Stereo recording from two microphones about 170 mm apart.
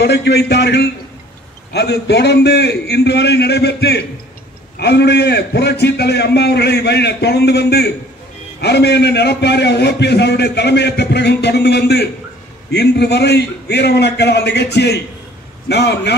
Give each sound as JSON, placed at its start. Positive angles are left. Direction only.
{"t": 0.0, "sound": "a man's voice", "side_deg": 75}